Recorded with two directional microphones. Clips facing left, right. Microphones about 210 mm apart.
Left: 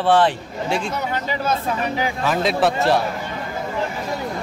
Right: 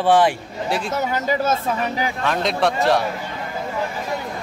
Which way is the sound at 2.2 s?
5° left (ahead or behind).